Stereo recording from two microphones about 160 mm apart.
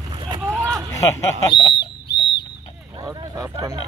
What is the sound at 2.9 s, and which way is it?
Speech, 25° right (ahead or behind).